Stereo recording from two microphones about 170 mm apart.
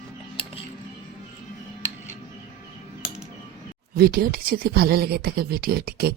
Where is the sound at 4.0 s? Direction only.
65° right (ahead or behind).